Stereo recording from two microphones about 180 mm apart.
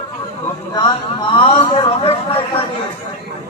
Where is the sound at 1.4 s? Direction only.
30° left (ahead or behind).